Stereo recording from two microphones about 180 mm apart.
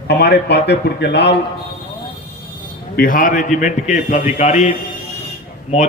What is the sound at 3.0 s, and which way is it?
A man's voice, 50° left (ahead or behind).